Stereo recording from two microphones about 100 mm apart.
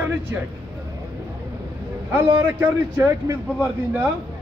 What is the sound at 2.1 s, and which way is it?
A man's voice, 20° right (ahead or behind).